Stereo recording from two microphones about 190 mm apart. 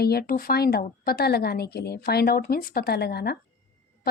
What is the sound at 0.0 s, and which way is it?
Speech, 55° left (ahead or behind).